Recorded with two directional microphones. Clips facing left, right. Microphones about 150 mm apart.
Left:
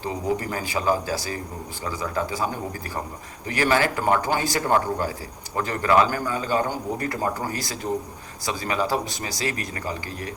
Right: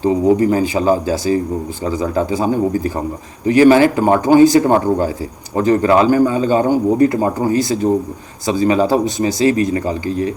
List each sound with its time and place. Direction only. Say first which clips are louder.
0.0 s speech: right 13 dB; 20° right (ahead or behind)